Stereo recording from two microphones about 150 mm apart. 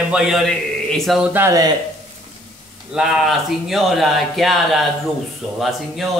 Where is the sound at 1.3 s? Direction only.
20° right (ahead or behind).